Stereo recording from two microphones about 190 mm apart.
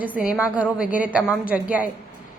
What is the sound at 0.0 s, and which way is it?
A woman's voice, 5° right (ahead or behind).